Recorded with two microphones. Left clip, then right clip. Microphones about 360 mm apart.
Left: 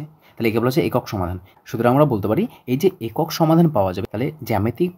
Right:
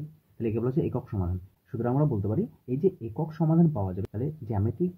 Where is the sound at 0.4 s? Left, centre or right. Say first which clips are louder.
Left 10 dB; left.